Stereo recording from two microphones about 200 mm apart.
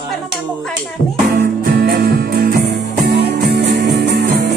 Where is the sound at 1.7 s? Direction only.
50° right (ahead or behind).